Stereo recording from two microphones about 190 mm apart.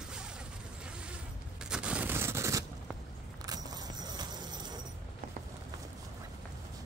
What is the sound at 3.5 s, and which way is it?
Vehicle, 20° right (ahead or behind).